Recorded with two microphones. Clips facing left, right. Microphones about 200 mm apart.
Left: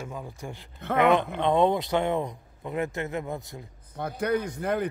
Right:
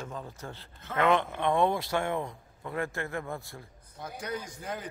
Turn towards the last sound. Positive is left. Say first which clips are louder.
# left 11 dB
turn(degrees=60)  # may be behind; listen again after turning